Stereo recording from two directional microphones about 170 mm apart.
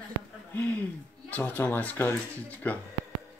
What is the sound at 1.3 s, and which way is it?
Speech, 10° left (ahead or behind).